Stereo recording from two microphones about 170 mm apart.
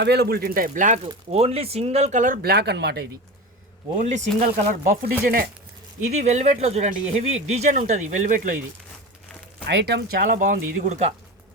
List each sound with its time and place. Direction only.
0.0 s speech: 75° right (ahead or behind); by 0.9 s 50° right (ahead or behind)
1.0 s speech: 35° right (ahead or behind); by 3.1 s 70° right (ahead or behind)
3.9 s speech: 45° right (ahead or behind)
6.1 s speech: 40° right (ahead or behind)
9.6 s speech: 80° right; by 11.1 s 45° right (ahead or behind)